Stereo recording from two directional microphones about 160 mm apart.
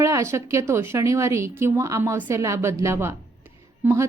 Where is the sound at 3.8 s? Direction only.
20° right (ahead or behind).